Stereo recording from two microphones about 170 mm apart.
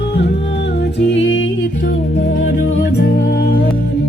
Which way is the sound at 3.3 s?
75° left (ahead or behind).